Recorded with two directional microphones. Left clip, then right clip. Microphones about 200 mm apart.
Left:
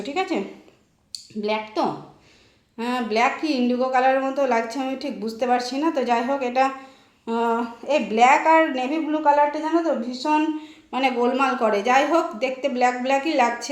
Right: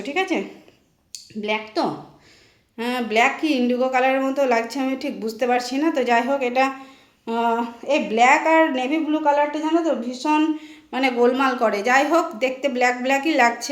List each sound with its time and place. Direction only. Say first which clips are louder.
0.0 s a woman's voice: right 2 dB; 25° right (ahead or behind)